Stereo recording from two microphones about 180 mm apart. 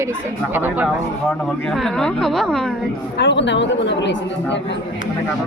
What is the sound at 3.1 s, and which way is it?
Speech, 85° left.